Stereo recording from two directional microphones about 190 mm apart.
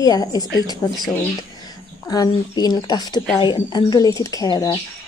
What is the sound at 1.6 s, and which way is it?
Speech, 20° left (ahead or behind).